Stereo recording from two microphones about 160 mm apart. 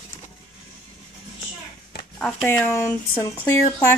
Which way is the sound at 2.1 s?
5° left (ahead or behind).